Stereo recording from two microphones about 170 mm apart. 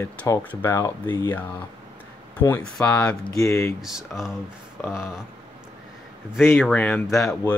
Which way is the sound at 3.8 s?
5° right (ahead or behind).